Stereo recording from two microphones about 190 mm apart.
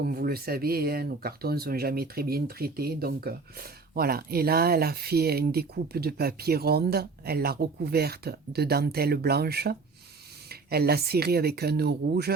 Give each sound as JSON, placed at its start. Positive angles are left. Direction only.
{"t": 0.0, "sound": "speech", "side_deg": -50}